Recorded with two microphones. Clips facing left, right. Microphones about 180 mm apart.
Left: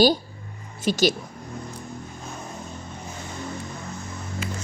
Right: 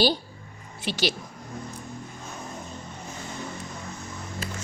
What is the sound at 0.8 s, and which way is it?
Speech, 45° left (ahead or behind).